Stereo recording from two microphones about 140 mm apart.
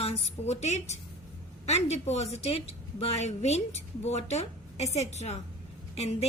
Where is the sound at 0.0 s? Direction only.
55° left (ahead or behind).